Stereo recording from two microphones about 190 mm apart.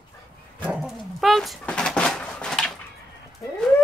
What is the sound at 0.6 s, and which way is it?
Dog, 5° right (ahead or behind).